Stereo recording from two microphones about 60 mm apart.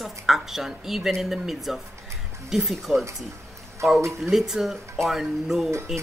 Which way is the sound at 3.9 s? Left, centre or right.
Right.